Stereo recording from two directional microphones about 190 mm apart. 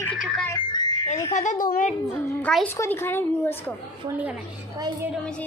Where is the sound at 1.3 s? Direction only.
45° left (ahead or behind).